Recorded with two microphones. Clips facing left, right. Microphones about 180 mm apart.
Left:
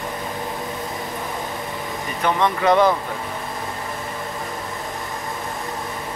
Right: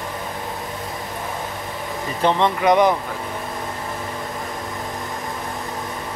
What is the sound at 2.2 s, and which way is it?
Speech, 20° right (ahead or behind).